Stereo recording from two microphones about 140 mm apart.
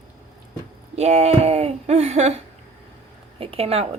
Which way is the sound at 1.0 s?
50° right (ahead or behind).